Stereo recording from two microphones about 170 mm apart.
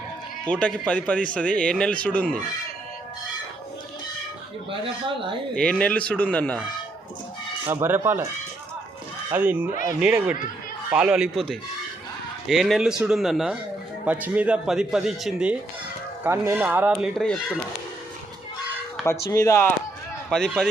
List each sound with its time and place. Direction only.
0.5 s speech: 5° left (ahead or behind)
5.5 s speech: 5° left (ahead or behind)
7.7 s speech: 10° right (ahead or behind)
9.3 s a man's voice: 10° right (ahead or behind)
16.2 s speech: 15° right (ahead or behind)
19.3 s speech: 20° left (ahead or behind)
20.3 s a man's voice: 5° left (ahead or behind)